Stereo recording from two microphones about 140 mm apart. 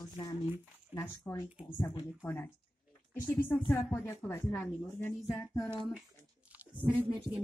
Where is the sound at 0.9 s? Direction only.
20° left (ahead or behind).